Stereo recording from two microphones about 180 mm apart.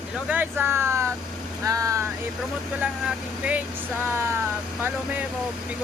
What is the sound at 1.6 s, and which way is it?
Vehicle, 20° right (ahead or behind).